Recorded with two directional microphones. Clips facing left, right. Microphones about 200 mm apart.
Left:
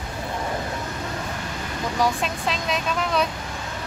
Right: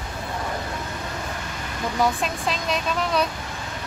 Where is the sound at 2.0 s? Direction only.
Centre (ahead or behind).